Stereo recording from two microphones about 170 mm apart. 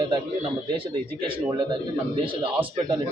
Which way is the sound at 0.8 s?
30° right (ahead or behind).